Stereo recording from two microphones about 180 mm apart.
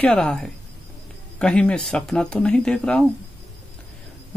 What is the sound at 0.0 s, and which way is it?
Speech, 5° left (ahead or behind).